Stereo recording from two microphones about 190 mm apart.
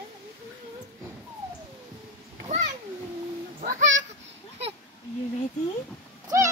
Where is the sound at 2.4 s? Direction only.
35° right (ahead or behind).